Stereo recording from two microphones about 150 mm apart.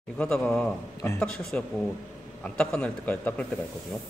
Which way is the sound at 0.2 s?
5° left (ahead or behind).